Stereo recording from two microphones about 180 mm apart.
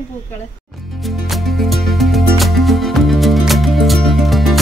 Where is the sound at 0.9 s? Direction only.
Centre (ahead or behind).